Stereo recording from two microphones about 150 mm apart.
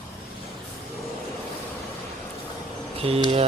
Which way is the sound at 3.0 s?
40° right (ahead or behind).